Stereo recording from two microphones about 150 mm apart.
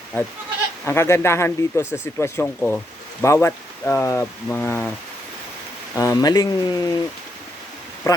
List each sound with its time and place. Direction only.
0.9 s speech: 15° left (ahead or behind)
5.9 s speech: 20° left (ahead or behind)
8.1 s speech: 20° left (ahead or behind)